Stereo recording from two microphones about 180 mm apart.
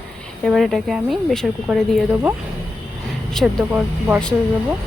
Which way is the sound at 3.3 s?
5° right (ahead or behind).